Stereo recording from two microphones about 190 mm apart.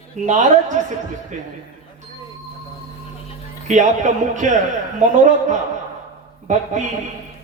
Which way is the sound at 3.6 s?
40° right (ahead or behind).